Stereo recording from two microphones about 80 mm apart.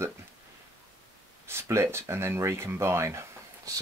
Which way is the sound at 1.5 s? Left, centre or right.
Right.